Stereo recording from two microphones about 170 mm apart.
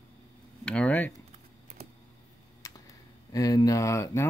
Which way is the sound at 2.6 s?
20° left (ahead or behind).